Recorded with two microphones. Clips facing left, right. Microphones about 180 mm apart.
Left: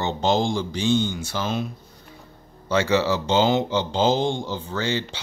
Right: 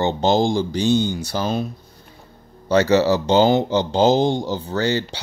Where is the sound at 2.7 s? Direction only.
40° right (ahead or behind).